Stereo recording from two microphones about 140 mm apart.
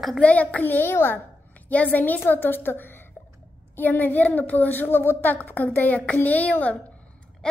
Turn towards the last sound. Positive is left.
turn(degrees=10)  # may be behind; listen again after turning